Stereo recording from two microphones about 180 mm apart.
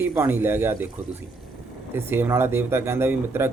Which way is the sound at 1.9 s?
10° right (ahead or behind).